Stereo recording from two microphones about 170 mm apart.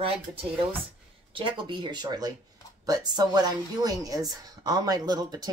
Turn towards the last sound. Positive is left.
turn(degrees=-20)  # may be behind; listen again after turning